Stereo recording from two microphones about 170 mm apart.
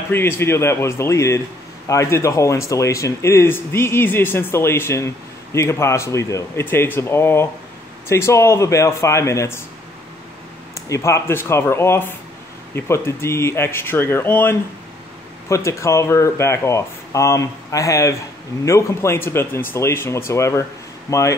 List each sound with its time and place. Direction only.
0.1 s speech: 15° left (ahead or behind)
10.7 s speech: 20° left (ahead or behind)